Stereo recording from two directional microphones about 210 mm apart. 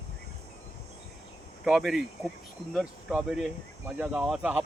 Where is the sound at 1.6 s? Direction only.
Centre (ahead or behind).